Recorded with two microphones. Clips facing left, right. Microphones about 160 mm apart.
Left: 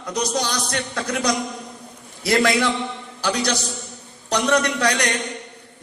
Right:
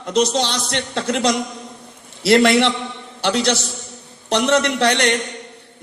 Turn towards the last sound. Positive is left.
turn(degrees=-25)  # may be behind; listen again after turning